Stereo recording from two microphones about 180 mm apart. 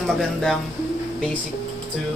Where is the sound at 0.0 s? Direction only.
Centre (ahead or behind).